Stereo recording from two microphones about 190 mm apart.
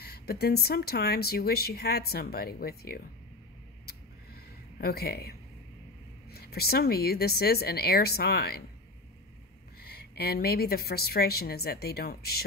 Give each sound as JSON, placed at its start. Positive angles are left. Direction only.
{"t": 0.0, "sound": "speech", "side_deg": 55}
{"t": 4.7, "sound": "speech", "side_deg": 55}
{"t": 6.3, "sound": "speech", "side_deg": 55}
{"t": 9.8, "sound": "speech", "side_deg": 55}